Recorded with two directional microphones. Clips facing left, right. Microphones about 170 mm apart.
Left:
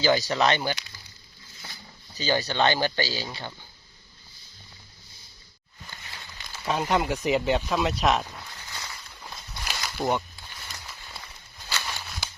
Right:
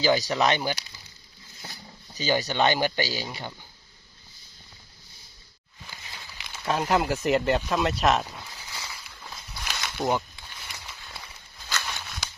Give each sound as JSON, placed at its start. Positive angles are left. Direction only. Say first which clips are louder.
{"t": 0.0, "sound": "speech", "louder": "even", "side_deg": -15}
{"t": 2.1, "sound": "speech", "louder": "even", "side_deg": -15}
{"t": 6.1, "sound": "a sound", "louder": "even", "side_deg": 0}
{"t": 11.8, "sound": "walk", "louder": "left 1 dB", "side_deg": 0}